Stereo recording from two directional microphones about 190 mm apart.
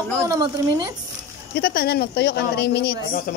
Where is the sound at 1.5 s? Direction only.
55° left (ahead or behind).